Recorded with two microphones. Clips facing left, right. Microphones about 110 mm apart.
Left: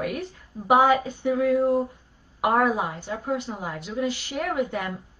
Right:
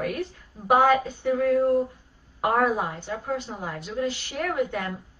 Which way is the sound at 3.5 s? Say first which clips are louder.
Even; 5° left (ahead or behind).